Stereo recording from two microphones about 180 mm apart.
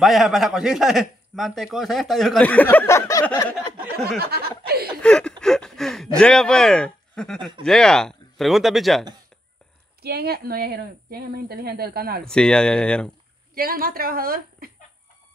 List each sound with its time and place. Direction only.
0.0 s a man's voice: centre (ahead or behind); by 3.3 s 15° left (ahead or behind)
4.3 s a woman's voice: 60° right (ahead or behind)
5.0 s a man's voice: 5° left (ahead or behind)
5.4 s a sound: 5° left (ahead or behind)
6.1 s a man's voice: 5° left (ahead or behind)
10.0 s a woman's voice: 60° right (ahead or behind)
12.3 s a man's voice: 5° left (ahead or behind)
13.6 s a woman's voice: 55° right (ahead or behind)